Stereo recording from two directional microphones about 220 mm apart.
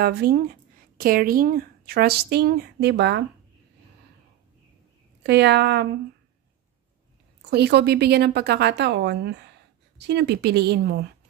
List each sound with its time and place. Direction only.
0.0 s speech: 45° right (ahead or behind)
5.2 s a woman's voice: 50° right (ahead or behind)
7.4 s a woman's voice: 50° right (ahead or behind)